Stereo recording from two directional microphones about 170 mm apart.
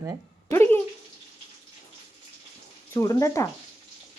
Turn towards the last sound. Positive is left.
turn(degrees=20)  # may be behind; listen again after turning